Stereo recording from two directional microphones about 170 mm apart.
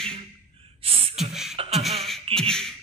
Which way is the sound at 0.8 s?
35° right (ahead or behind).